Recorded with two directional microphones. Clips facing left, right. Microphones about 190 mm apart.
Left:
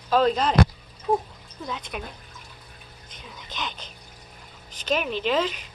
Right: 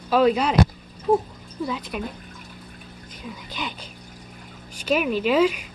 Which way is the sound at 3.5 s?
10° right (ahead or behind).